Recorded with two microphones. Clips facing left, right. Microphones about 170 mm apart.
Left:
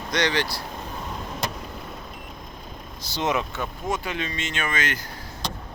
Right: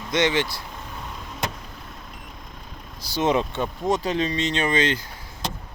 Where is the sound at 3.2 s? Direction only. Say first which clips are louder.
Right 4 dB; 25° right (ahead or behind).